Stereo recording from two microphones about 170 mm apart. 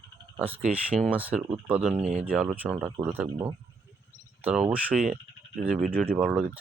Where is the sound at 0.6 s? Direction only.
5° right (ahead or behind).